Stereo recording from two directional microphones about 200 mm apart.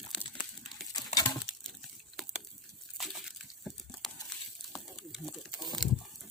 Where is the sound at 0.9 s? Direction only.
20° left (ahead or behind).